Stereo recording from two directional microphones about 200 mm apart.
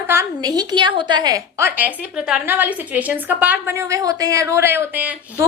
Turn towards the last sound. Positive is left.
turn(degrees=-10)  # may be behind; listen again after turning